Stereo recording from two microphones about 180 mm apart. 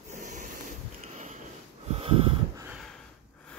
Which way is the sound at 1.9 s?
30° right (ahead or behind).